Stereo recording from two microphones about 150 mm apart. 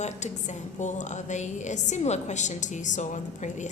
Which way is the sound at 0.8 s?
55° left (ahead or behind).